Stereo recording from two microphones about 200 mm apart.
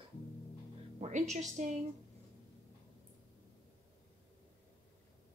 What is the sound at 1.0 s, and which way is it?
Speech, 35° right (ahead or behind).